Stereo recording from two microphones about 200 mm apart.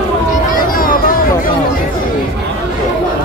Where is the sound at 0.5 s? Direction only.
45° left (ahead or behind).